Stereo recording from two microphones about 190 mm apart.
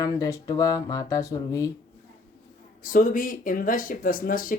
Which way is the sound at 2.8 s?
45° left (ahead or behind).